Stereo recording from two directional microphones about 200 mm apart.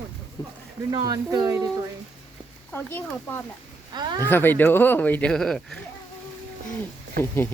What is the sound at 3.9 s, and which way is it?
Speech, 20° right (ahead or behind).